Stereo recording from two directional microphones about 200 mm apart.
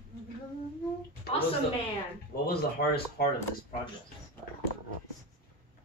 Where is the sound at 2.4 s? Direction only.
50° left (ahead or behind).